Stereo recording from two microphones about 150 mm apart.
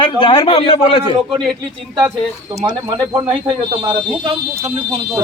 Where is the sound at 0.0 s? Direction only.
35° left (ahead or behind).